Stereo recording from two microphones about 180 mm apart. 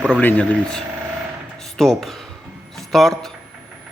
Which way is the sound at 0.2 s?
10° left (ahead or behind).